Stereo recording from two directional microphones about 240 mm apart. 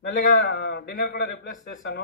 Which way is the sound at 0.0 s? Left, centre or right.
Left.